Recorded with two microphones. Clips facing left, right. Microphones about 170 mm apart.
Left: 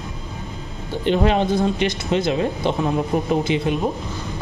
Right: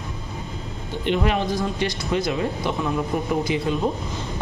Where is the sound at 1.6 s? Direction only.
25° left (ahead or behind).